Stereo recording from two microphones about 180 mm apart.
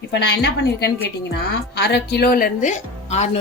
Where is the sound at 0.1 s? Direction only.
65° left (ahead or behind).